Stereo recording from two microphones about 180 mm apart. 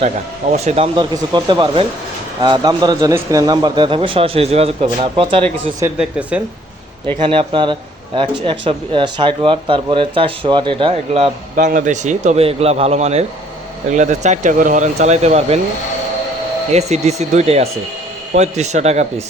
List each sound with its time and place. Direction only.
0.5 s a man's voice: 35° right (ahead or behind)
0.9 s speech: 20° right (ahead or behind)
6.0 s speech: 5° right (ahead or behind)
7.2 s speech: 30° right (ahead or behind)
11.5 s a man's voice: 45° right (ahead or behind)
16.7 s a man's voice: 35° right (ahead or behind)